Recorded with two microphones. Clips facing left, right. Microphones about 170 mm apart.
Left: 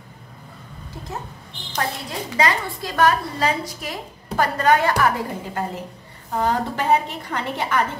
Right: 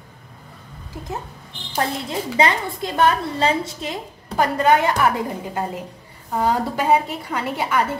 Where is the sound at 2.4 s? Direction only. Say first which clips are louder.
Right 1 dB; 25° right (ahead or behind).